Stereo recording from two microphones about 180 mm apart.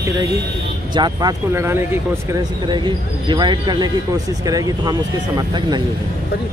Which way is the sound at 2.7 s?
25° right (ahead or behind).